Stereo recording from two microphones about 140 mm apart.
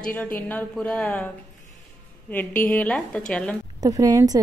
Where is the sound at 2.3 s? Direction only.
10° left (ahead or behind).